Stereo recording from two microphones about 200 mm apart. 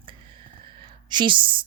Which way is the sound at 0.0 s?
25° right (ahead or behind).